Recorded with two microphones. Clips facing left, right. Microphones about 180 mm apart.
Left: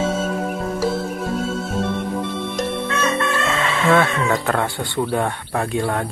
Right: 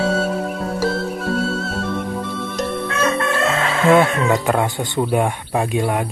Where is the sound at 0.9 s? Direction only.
20° left (ahead or behind).